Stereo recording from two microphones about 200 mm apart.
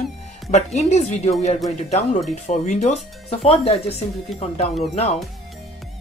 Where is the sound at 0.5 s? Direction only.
35° left (ahead or behind).